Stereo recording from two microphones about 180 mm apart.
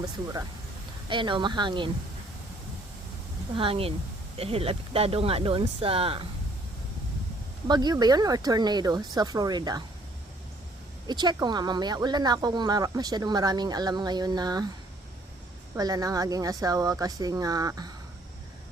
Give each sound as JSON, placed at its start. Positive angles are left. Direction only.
{"t": 1.1, "sound": "speech", "side_deg": -25}
{"t": 3.5, "sound": "speech", "side_deg": -30}
{"t": 7.7, "sound": "speech", "side_deg": -25}
{"t": 11.0, "sound": "speech", "side_deg": -25}
{"t": 15.7, "sound": "speech", "side_deg": -20}